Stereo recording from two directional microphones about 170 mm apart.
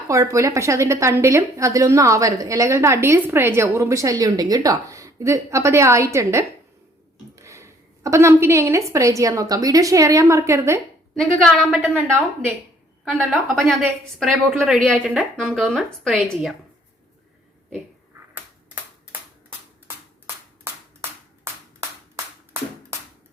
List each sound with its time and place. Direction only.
0.1 s a woman's voice: 20° right (ahead or behind)
11.1 s speech: 5° left (ahead or behind)
11.7 s a woman's voice: 10° right (ahead or behind)
13.1 s speech: centre (ahead or behind)
21.0 s clapping: 15° right (ahead or behind)